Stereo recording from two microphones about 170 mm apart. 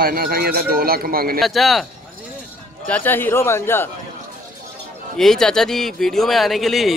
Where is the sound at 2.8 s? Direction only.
10° left (ahead or behind).